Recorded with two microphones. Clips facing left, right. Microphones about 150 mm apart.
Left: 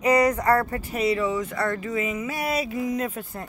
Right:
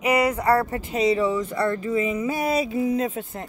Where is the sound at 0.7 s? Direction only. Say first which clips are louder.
Right 3 dB; 20° right (ahead or behind).